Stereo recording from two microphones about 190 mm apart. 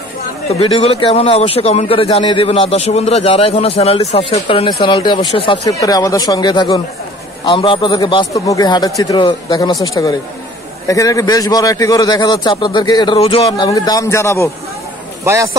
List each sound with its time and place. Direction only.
0.5 s a man's voice: 30° left (ahead or behind)
10.9 s a man's voice: 15° left (ahead or behind)